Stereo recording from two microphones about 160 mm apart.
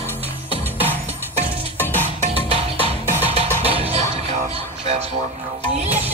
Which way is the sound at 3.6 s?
35° right (ahead or behind).